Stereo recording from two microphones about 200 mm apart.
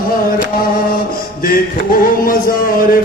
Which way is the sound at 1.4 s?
45° left (ahead or behind).